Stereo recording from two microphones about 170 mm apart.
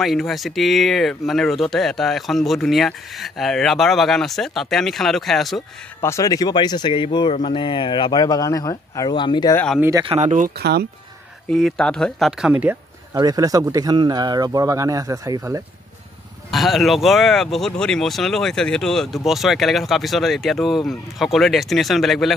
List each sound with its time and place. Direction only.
0.0 s speech: centre (ahead or behind)
5.9 s speech: 15° left (ahead or behind)
9.8 s speech: 15° right (ahead or behind)
10.0 s speech: 40° right (ahead or behind)
10.6 s speech: 70° right (ahead or behind)
11.5 s speech: centre (ahead or behind)
13.2 s speech: 20° right (ahead or behind)
16.4 s speech: centre (ahead or behind)